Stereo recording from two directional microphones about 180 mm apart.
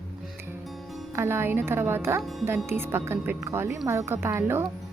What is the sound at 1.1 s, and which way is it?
Speech, 15° right (ahead or behind).